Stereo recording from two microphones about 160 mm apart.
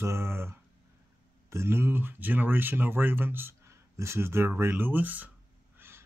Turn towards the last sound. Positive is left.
turn(degrees=-10)  # may be behind; listen again after turning